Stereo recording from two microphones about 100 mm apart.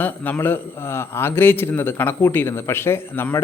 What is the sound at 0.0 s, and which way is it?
A man's voice, 20° left (ahead or behind).